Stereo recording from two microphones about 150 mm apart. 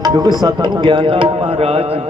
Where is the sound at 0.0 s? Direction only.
25° right (ahead or behind).